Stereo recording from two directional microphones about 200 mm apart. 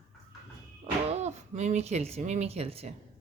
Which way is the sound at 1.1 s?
35° right (ahead or behind).